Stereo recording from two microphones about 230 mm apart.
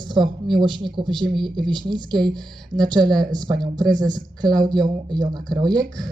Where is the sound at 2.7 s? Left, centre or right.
Centre.